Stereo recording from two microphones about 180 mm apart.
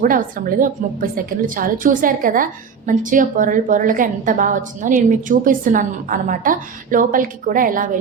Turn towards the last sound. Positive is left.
turn(degrees=-50)  # may be behind; listen again after turning